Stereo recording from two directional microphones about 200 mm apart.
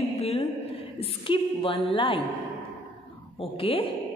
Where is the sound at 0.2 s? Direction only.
30° left (ahead or behind).